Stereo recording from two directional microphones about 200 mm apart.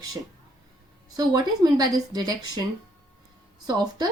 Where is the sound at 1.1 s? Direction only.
20° right (ahead or behind).